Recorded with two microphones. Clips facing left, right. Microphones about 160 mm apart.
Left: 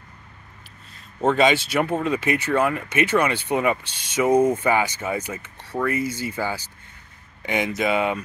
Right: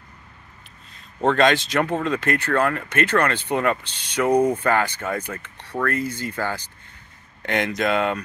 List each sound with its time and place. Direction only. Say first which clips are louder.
1.2 s speech: even; 5° left (ahead or behind)